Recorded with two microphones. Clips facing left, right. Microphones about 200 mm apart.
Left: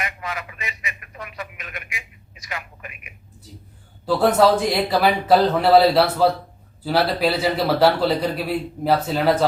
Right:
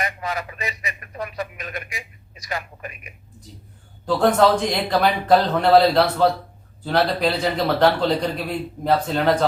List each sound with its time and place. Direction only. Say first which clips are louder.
0.0 s speech: right 3 dB; 35° right (ahead or behind)
4.0 s a man's voice: left 1 dB; 5° left (ahead or behind)